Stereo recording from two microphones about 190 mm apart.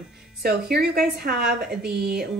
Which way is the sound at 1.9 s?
50° right (ahead or behind).